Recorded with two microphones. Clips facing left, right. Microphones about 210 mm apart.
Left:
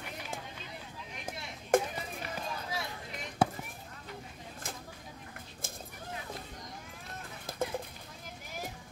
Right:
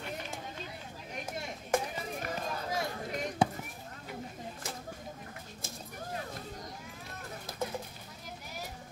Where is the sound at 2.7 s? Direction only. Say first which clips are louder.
Right 5 dB; 45° right (ahead or behind).